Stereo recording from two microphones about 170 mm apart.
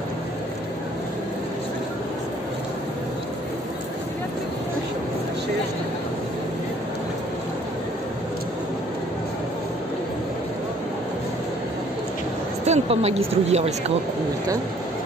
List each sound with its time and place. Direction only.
12.6 s a woman's voice: 40° right (ahead or behind)